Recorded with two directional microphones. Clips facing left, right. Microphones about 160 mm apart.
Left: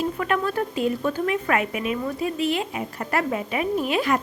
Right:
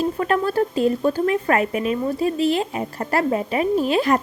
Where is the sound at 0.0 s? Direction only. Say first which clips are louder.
Right 3 dB; 35° right (ahead or behind).